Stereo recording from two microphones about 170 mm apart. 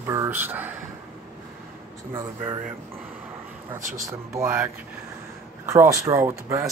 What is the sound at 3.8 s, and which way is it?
Speech, 50° right (ahead or behind).